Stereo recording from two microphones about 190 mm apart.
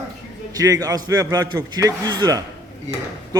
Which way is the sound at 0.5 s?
20° right (ahead or behind).